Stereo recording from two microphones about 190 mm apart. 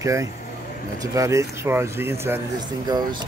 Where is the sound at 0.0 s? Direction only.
15° right (ahead or behind).